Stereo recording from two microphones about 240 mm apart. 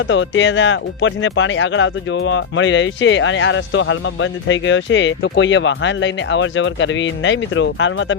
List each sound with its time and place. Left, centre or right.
0.0 s speech: left